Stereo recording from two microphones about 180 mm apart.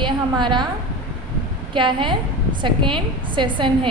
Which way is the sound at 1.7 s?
25° right (ahead or behind).